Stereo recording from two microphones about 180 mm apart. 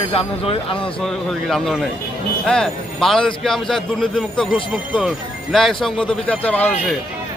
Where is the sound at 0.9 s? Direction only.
5° left (ahead or behind).